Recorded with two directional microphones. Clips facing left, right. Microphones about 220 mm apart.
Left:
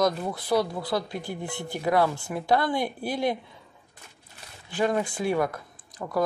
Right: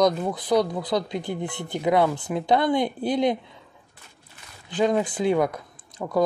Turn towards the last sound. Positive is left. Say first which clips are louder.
# right 4 dB
turn(degrees=-20)  # may be behind; listen again after turning